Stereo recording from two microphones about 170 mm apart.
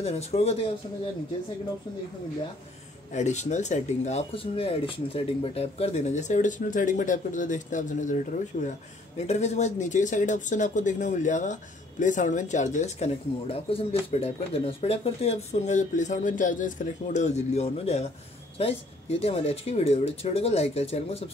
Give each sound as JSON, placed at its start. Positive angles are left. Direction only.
{"t": 0.0, "sound": "speech", "side_deg": 40}
{"t": 3.1, "sound": "speech", "side_deg": 45}